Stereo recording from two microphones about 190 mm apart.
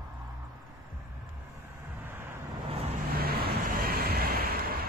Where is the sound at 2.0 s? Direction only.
10° right (ahead or behind).